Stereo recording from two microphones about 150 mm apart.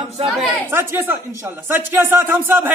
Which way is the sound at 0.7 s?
15° right (ahead or behind).